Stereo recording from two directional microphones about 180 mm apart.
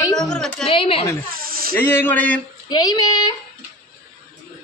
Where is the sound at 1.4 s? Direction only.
55° right (ahead or behind).